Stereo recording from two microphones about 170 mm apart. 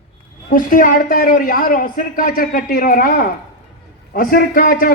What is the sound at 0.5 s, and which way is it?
A man's voice, 55° left (ahead or behind).